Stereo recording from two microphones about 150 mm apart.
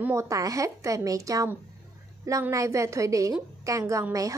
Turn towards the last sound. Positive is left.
turn(degrees=-20)  # may be behind; listen again after turning